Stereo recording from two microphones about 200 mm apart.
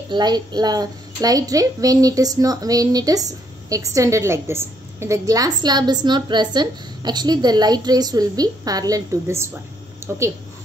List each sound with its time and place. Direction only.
0.1 s a woman's voice: 20° right (ahead or behind)